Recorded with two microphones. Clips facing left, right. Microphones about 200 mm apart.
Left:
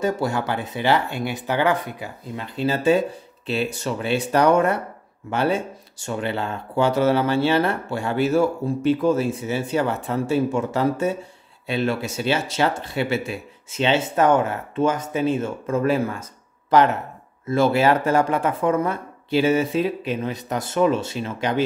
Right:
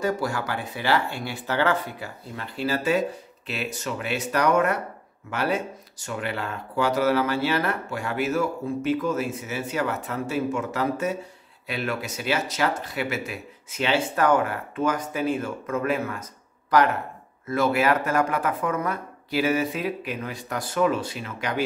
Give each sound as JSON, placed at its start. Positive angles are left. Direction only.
{"t": 0.0, "sound": "speech", "side_deg": 25}